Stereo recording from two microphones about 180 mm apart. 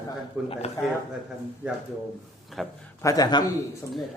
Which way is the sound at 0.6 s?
35° left (ahead or behind).